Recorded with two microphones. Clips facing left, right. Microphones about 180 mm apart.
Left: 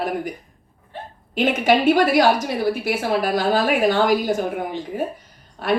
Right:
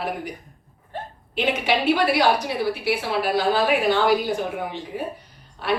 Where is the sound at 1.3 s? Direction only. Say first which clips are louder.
Left 5 dB; 45° left (ahead or behind).